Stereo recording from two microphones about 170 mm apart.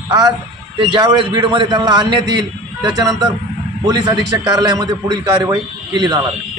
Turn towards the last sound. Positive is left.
turn(degrees=-25)  # may be behind; listen again after turning